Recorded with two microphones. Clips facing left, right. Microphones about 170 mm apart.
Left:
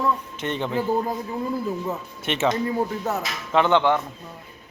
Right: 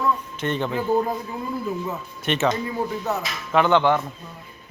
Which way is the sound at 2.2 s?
20° left (ahead or behind).